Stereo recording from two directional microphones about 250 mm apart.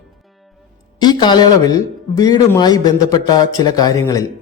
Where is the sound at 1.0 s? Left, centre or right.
Centre.